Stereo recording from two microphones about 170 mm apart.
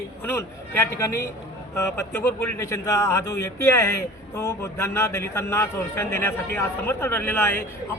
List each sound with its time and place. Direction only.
0.3 s speech: 15° left (ahead or behind)